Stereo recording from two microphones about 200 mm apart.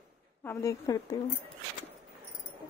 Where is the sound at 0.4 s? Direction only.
10° left (ahead or behind).